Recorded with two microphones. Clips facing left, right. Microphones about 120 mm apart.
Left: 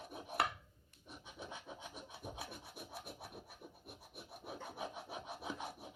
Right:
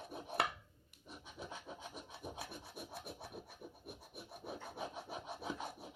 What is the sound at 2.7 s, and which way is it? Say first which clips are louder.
Rub: right 2 dB; 5° left (ahead or behind).